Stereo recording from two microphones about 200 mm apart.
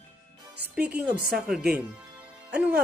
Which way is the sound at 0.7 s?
5° right (ahead or behind).